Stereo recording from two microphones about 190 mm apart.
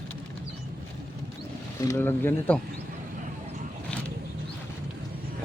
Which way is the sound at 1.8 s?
15° left (ahead or behind).